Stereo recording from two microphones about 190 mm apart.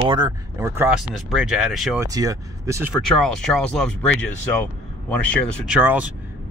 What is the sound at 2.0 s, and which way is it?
Speech, 15° right (ahead or behind).